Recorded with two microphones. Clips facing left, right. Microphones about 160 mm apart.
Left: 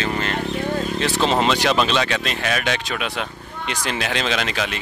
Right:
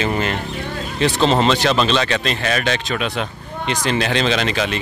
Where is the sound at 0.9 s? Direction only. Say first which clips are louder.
Right 6 dB; 5° left (ahead or behind).